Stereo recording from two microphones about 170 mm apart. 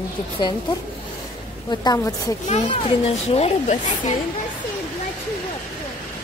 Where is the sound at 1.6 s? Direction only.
20° left (ahead or behind).